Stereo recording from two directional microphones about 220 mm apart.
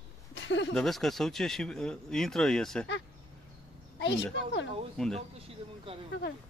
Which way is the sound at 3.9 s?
55° left (ahead or behind).